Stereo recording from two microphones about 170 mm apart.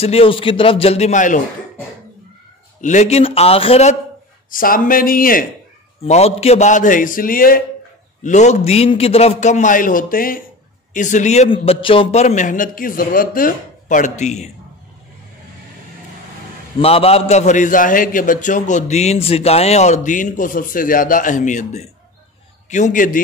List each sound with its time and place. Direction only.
0.0 s a man's voice: 35° left (ahead or behind)
2.8 s a man's voice: 45° left (ahead or behind)
4.5 s speech: 55° left (ahead or behind)
6.0 s a man's voice: 40° left (ahead or behind); by 7.6 s 55° left (ahead or behind)
8.2 s a man's voice: 45° left (ahead or behind)
16.8 s a man's voice: 35° left (ahead or behind); by 23.2 s 50° left (ahead or behind)